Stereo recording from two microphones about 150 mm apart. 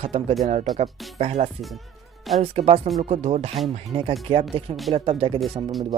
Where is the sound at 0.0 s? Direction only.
45° right (ahead or behind).